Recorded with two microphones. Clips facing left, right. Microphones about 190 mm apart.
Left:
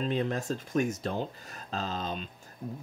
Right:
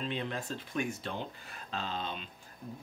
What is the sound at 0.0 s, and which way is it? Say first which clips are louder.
Speech: left 6 dB; 40° left (ahead or behind).